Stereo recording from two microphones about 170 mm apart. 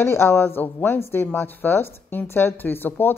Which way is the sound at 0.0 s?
15° left (ahead or behind).